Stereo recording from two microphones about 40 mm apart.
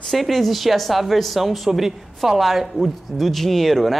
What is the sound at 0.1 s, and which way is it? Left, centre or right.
A woman's voice, centre.